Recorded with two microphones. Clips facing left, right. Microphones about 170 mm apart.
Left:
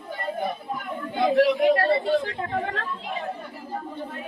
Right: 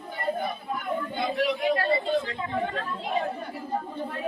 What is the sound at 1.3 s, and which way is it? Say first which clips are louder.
Speech: left 7 dB; 65° left (ahead or behind).